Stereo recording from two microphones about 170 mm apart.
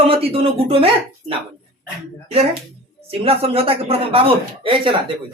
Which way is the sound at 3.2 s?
35° right (ahead or behind).